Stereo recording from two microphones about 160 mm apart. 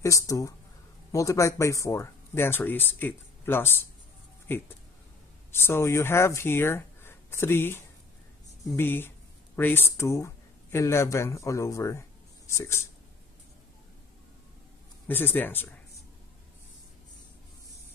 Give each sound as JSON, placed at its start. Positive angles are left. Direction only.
{"t": 0.0, "sound": "speech", "side_deg": 20}
{"t": 15.0, "sound": "speech", "side_deg": 10}